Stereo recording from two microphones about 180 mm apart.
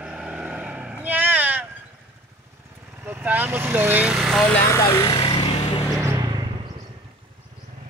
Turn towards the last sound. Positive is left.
turn(degrees=-20)  # may be behind; listen again after turning